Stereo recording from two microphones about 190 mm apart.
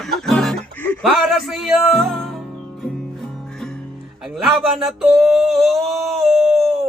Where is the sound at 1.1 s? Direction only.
Centre (ahead or behind).